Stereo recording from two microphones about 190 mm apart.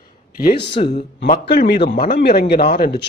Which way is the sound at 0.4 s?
55° left (ahead or behind).